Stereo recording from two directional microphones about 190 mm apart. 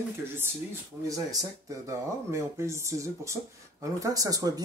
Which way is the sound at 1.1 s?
15° right (ahead or behind).